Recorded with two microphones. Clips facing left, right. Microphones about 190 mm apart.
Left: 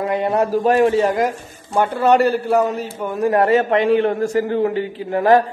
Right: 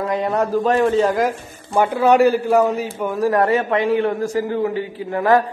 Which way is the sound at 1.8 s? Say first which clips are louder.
Right 1 dB; 10° right (ahead or behind).